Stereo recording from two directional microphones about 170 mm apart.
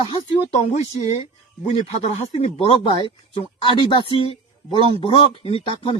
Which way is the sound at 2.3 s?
35° left (ahead or behind).